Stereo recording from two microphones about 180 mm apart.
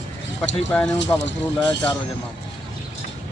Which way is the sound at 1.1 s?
20° left (ahead or behind).